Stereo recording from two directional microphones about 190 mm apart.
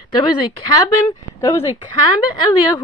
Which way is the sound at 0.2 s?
20° left (ahead or behind).